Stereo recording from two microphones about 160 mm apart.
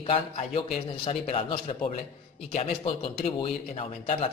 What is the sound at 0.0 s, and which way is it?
Speech, 35° left (ahead or behind).